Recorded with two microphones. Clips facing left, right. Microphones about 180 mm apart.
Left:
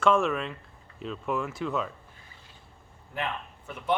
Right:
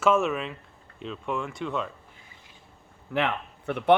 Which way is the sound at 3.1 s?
75° right (ahead or behind).